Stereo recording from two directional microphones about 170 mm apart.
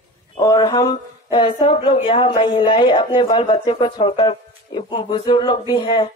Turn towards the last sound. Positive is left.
turn(degrees=25)  # may be behind; listen again after turning